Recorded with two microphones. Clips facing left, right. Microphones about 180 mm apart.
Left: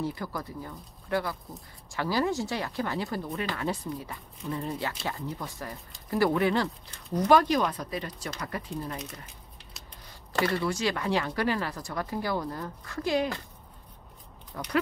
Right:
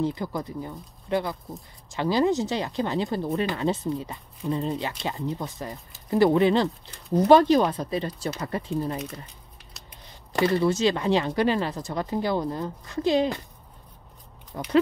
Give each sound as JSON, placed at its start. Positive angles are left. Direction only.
{"t": 0.0, "sound": "speech", "side_deg": -20}
{"t": 9.8, "sound": "scissors", "side_deg": 0}
{"t": 10.3, "sound": "speech", "side_deg": -25}
{"t": 14.5, "sound": "speech", "side_deg": -25}